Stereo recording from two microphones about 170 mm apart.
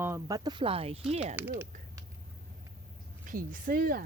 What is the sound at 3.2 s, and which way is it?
Speech, 50° right (ahead or behind).